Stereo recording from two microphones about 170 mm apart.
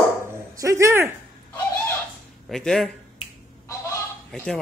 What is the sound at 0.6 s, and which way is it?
Speech, 20° right (ahead or behind).